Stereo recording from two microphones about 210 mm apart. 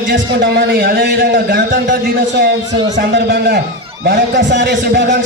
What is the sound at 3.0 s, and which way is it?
A man's voice, 55° right (ahead or behind).